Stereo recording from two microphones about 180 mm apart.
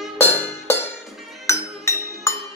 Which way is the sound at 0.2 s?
10° left (ahead or behind).